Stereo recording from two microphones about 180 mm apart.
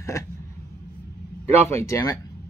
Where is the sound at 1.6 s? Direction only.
15° left (ahead or behind).